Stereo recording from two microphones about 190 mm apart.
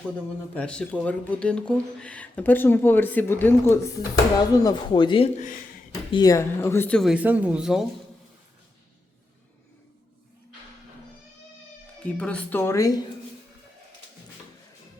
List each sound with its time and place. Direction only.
0.5 s speech: 5° left (ahead or behind)
4.5 s speech: 20° left (ahead or behind); by 7.9 s 5° right (ahead or behind)
12.0 s speech: 5° left (ahead or behind)